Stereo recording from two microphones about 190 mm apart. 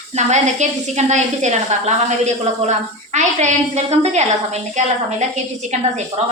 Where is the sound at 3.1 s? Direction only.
35° right (ahead or behind).